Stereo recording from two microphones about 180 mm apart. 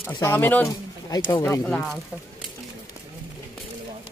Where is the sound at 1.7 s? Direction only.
Centre (ahead or behind).